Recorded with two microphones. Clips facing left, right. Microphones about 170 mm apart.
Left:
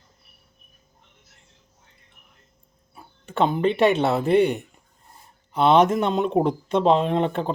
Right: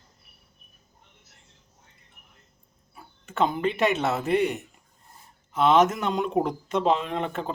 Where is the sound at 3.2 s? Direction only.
30° left (ahead or behind).